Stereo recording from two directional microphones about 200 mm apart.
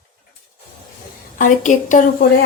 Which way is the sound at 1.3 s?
40° left (ahead or behind).